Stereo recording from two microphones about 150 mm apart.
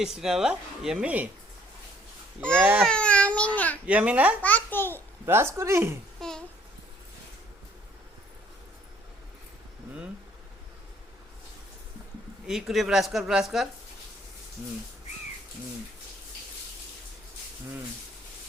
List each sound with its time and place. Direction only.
0.0 s speech: 5° right (ahead or behind)
2.5 s a woman's voice: 10° right (ahead or behind)
2.8 s speech: 5° left (ahead or behind)
3.8 s a woman's voice: 10° right (ahead or behind)
4.4 s a child's voice: 15° left (ahead or behind)
5.2 s a woman's voice: 15° right (ahead or behind)
6.1 s babbling: 5° left (ahead or behind)
12.5 s speech: centre (ahead or behind)